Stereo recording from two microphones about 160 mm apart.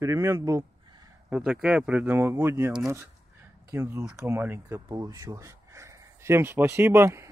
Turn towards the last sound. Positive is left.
turn(degrees=-15)  # may be behind; listen again after turning